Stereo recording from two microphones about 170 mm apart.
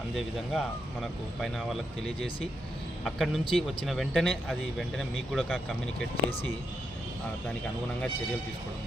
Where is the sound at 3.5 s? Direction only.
Centre (ahead or behind).